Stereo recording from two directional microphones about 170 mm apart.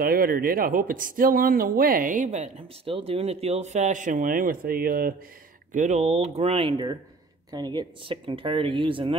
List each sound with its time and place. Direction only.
0.0 s speech: 60° right (ahead or behind)
5.7 s speech: 45° right (ahead or behind); by 9.1 s 30° right (ahead or behind)